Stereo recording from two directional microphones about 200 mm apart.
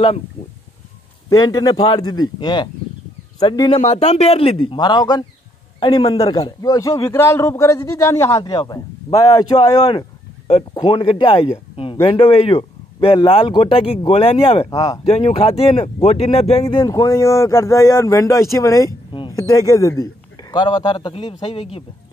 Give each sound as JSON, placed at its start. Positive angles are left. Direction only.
{"t": 1.3, "sound": "speech", "side_deg": 20}
{"t": 3.8, "sound": "a man's voice", "side_deg": 35}
{"t": 15.0, "sound": "speech", "side_deg": 30}
{"t": 16.6, "sound": "a man's voice", "side_deg": 20}